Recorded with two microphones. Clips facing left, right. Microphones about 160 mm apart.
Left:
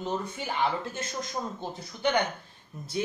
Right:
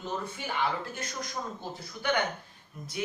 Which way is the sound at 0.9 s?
25° left (ahead or behind).